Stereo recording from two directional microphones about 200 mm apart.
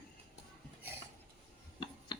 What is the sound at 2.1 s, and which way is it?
Computer keyboard, 20° left (ahead or behind).